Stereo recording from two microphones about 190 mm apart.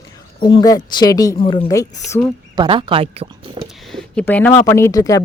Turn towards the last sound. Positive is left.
turn(degrees=15)  # may be behind; listen again after turning